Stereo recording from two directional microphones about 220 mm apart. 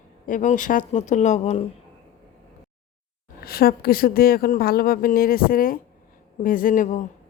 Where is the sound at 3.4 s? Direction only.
45° left (ahead or behind).